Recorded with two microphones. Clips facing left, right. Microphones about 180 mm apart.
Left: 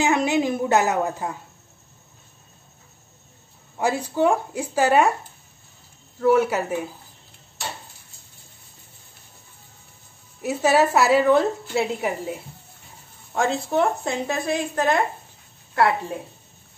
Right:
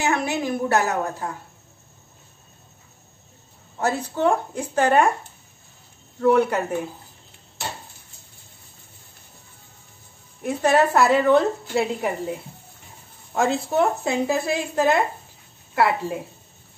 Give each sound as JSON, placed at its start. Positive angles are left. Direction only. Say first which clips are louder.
{"t": 0.0, "sound": "a woman's voice", "louder": "left 3 dB", "side_deg": 15}
{"t": 3.8, "sound": "a woman's voice", "louder": "left 1 dB", "side_deg": 10}
{"t": 6.1, "sound": "a woman's voice", "louder": "even", "side_deg": 5}
{"t": 10.4, "sound": "a woman's voice", "louder": "even", "side_deg": 5}